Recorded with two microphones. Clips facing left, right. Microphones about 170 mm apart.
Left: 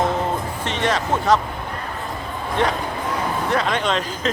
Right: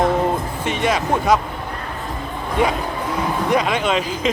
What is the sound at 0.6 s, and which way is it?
Speech, 10° right (ahead or behind).